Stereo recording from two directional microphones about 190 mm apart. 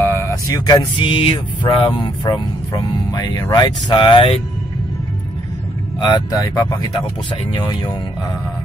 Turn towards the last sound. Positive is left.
turn(degrees=25)  # may be behind; listen again after turning